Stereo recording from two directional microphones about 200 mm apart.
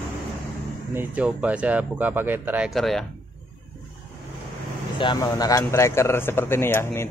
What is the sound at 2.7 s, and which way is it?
Speech, centre (ahead or behind).